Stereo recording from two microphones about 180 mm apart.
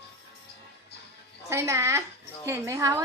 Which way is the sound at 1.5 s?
15° right (ahead or behind).